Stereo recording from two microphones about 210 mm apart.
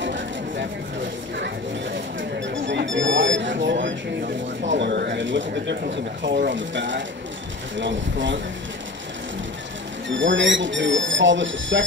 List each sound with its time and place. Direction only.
0.0 s vehicle: 60° right (ahead or behind)
2.1 s a sound: 60° right (ahead or behind)
3.6 s speech: 60° right (ahead or behind)
10.0 s speech: 60° right (ahead or behind)